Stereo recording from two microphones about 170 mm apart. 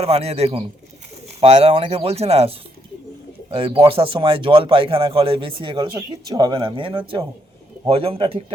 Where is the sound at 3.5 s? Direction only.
30° right (ahead or behind).